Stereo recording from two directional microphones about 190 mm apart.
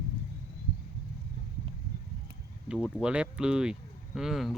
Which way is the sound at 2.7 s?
5° right (ahead or behind).